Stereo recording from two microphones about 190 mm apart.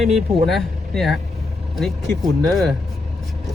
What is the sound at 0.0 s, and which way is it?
Speech, centre (ahead or behind).